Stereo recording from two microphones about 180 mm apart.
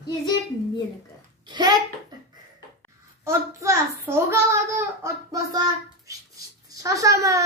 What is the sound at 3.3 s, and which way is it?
Speech, 15° right (ahead or behind).